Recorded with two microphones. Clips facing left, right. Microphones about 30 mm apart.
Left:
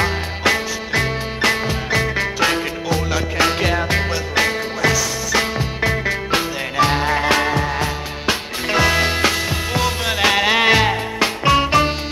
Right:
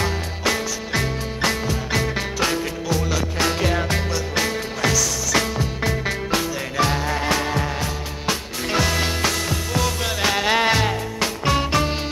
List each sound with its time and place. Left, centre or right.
0.0 s music: left